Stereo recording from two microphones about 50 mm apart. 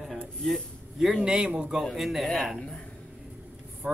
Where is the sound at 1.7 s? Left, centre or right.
Centre.